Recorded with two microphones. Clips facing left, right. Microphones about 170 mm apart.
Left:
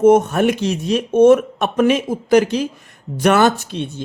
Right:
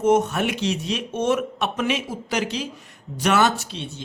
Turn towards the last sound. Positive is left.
turn(degrees=55)  # may be behind; listen again after turning